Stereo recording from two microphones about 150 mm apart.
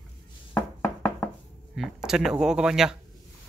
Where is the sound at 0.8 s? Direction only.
20° left (ahead or behind).